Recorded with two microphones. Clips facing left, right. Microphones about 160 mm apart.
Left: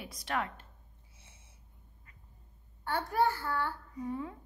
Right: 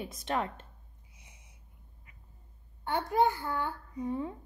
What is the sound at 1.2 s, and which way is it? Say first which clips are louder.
Snort: right 1 dB; 15° right (ahead or behind).